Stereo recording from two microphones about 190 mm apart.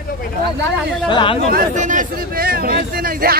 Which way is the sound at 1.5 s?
40° right (ahead or behind).